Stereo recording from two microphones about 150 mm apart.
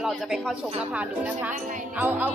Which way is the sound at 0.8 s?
10° right (ahead or behind).